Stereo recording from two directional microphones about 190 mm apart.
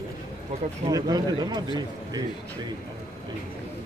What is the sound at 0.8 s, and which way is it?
Speech, 20° right (ahead or behind).